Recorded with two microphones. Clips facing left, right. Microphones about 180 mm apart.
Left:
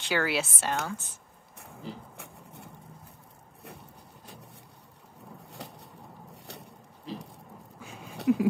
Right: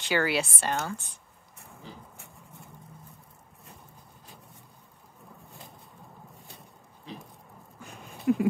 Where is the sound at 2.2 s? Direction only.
65° left (ahead or behind).